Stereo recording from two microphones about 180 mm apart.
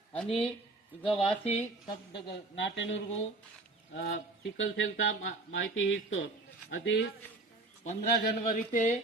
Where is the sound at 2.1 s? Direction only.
80° left.